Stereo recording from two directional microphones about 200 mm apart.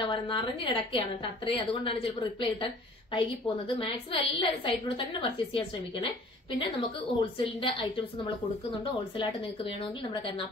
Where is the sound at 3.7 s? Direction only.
25° left (ahead or behind).